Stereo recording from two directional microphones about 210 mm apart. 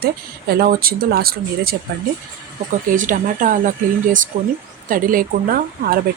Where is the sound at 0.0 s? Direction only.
45° right (ahead or behind).